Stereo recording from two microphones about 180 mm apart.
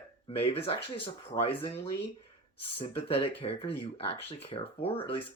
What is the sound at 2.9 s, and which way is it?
Speech, 30° left (ahead or behind).